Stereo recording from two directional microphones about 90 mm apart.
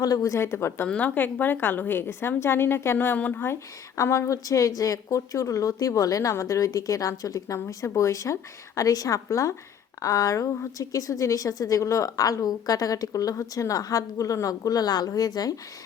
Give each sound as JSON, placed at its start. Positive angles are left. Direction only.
{"t": 0.0, "sound": "a woman's voice", "side_deg": 40}
{"t": 0.9, "sound": "a woman's voice", "side_deg": 15}